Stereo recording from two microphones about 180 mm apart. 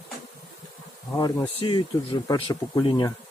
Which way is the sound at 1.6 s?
25° left (ahead or behind).